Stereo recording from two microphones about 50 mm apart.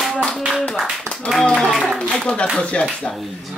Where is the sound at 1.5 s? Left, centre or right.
Centre.